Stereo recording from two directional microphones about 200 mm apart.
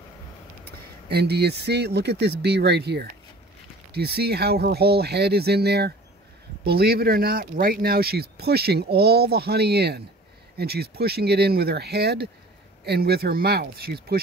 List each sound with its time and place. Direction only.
0.7 s speech: 55° right (ahead or behind)